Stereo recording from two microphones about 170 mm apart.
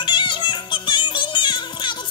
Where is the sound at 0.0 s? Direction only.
30° left (ahead or behind).